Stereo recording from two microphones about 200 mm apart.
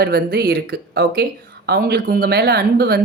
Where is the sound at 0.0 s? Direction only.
50° right (ahead or behind).